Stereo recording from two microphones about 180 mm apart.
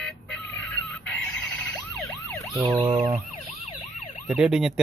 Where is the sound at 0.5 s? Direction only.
10° left (ahead or behind).